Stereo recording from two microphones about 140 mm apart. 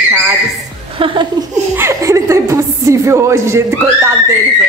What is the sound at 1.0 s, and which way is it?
Speech, 35° right (ahead or behind).